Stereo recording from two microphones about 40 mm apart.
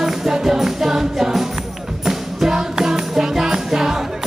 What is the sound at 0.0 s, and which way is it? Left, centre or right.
Music, centre.